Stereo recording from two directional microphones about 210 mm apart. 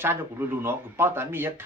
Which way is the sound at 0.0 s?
10° right (ahead or behind).